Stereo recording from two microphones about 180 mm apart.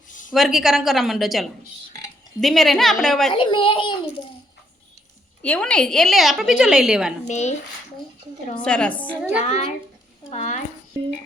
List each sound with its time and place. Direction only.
0.3 s a woman's voice: centre (ahead or behind)
3.3 s a child's voice: 30° left (ahead or behind)
5.4 s a woman's voice: 5° left (ahead or behind)
7.3 s speech: 40° left (ahead or behind)
8.6 s a woman's voice: 5° left (ahead or behind)
9.4 s speech: 35° left (ahead or behind)